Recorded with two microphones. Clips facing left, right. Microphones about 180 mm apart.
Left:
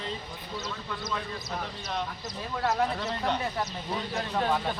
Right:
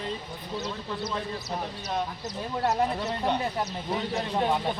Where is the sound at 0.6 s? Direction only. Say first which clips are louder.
Right 4 dB; 35° right (ahead or behind).